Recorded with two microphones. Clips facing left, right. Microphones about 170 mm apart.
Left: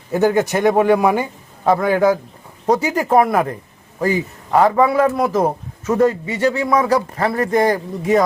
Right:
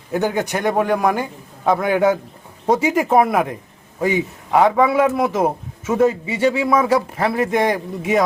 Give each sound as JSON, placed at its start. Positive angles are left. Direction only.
{"t": 0.1, "sound": "a man's voice", "side_deg": 5}